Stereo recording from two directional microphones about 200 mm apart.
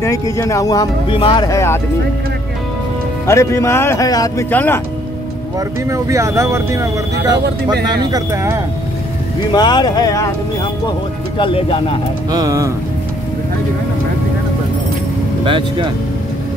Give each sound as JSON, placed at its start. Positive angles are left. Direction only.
{"t": 0.0, "sound": "speech", "side_deg": 15}
{"t": 3.3, "sound": "speech", "side_deg": 15}
{"t": 5.9, "sound": "speech", "side_deg": -15}
{"t": 9.5, "sound": "speech", "side_deg": 20}
{"t": 11.3, "sound": "speech", "side_deg": 25}
{"t": 12.3, "sound": "speech", "side_deg": -15}
{"t": 15.4, "sound": "speech", "side_deg": -25}